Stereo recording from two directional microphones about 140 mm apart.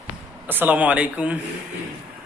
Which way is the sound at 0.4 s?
10° right (ahead or behind).